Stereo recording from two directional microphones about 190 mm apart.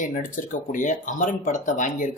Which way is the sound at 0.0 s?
45° left (ahead or behind).